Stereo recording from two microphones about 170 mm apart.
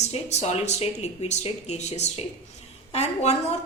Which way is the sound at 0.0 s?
40° left (ahead or behind).